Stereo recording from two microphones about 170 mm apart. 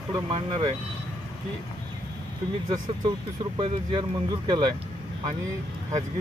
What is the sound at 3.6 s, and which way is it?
Speech, 25° right (ahead or behind).